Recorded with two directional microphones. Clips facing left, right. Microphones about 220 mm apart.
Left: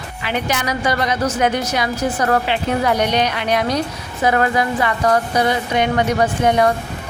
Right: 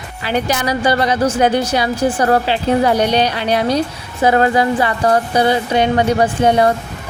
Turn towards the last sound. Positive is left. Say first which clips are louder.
# right 2 dB
turn(degrees=-30)  # may be behind; listen again after turning